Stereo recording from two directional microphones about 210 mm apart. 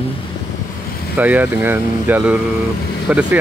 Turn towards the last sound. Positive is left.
turn(degrees=-5)  # may be behind; listen again after turning